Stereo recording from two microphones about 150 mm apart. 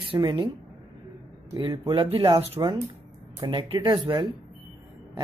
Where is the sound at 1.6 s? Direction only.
35° right (ahead or behind).